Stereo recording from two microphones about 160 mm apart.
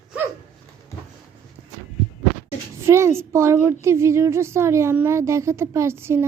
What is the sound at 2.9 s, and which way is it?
A woman's voice, 15° right (ahead or behind).